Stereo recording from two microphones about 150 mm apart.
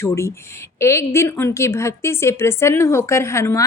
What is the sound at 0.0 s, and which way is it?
A woman's voice, 20° left (ahead or behind).